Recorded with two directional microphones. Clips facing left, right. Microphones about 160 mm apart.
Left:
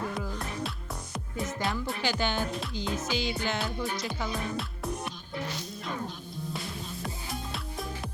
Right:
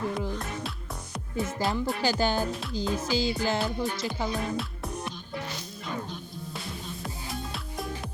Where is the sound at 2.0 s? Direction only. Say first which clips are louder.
Right 3 dB; 40° right (ahead or behind).